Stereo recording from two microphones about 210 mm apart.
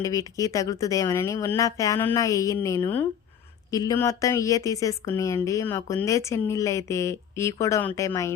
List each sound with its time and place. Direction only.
0.0 s a woman's voice: 15° left (ahead or behind)